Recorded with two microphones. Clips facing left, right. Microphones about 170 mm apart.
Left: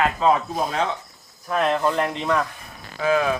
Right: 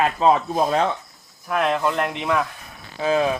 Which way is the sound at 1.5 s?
Centre (ahead or behind).